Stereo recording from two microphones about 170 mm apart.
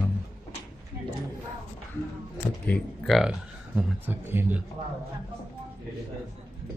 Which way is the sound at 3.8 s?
10° right (ahead or behind).